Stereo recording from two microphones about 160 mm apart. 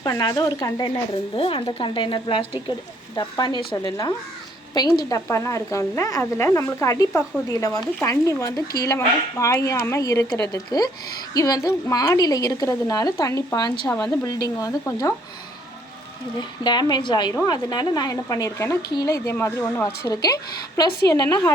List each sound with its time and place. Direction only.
0.0 s a woman's voice: 25° left (ahead or behind)
4.7 s a woman's voice: 25° left (ahead or behind)
16.4 s a woman's voice: 30° left (ahead or behind)